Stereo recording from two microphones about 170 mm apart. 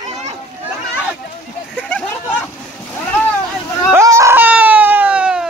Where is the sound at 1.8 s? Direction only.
5° left (ahead or behind).